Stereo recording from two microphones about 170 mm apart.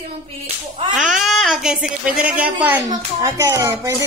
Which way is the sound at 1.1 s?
Centre (ahead or behind).